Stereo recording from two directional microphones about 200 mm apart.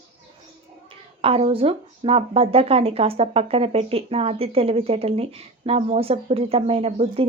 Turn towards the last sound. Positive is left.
turn(degrees=-30)  # may be behind; listen again after turning